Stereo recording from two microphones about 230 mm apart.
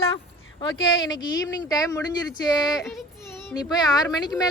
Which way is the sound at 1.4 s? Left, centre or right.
Centre.